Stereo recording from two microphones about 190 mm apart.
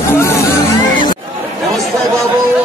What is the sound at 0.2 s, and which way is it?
Music, 15° left (ahead or behind).